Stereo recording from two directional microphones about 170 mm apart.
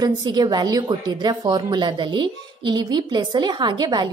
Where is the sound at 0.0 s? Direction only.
25° right (ahead or behind).